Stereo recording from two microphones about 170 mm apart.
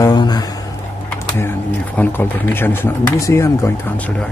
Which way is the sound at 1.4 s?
15° left (ahead or behind).